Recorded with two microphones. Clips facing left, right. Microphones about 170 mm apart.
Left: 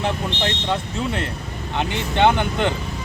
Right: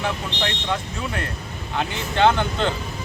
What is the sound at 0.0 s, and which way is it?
Speech, 25° left (ahead or behind).